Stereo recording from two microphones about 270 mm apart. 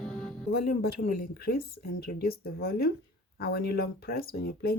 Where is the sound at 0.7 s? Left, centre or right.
Left.